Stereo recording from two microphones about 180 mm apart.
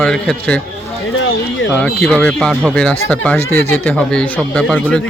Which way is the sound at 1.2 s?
90° left.